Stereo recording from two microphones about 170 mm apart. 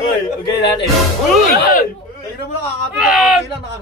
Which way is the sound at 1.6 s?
60° left (ahead or behind).